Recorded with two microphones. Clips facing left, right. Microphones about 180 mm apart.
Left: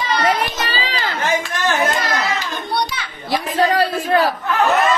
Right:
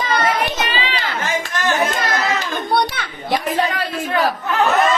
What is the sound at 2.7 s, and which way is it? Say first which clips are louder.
Children playing: right 3 dB; 55° right (ahead or behind).